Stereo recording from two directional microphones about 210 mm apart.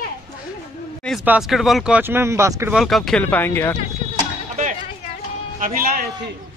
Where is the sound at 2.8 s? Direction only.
Centre (ahead or behind).